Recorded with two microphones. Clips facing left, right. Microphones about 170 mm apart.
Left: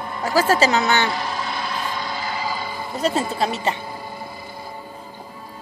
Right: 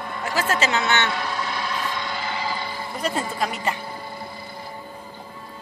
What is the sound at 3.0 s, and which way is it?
Speech, 25° left (ahead or behind).